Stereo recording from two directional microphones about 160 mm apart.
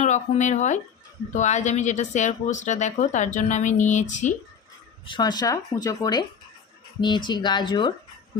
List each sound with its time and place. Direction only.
0.0 s speech: 45° left (ahead or behind)
5.0 s speech: 30° left (ahead or behind)